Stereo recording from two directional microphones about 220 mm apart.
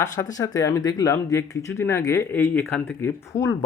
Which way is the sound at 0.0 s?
15° left (ahead or behind).